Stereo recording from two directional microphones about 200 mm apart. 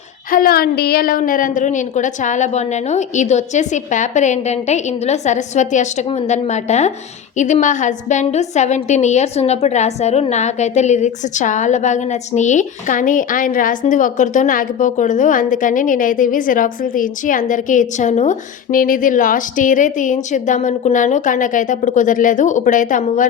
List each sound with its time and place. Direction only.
0.3 s a woman's voice: 45° left (ahead or behind)